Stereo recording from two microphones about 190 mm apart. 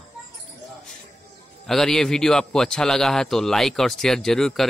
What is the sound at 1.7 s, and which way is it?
A man's voice, centre (ahead or behind).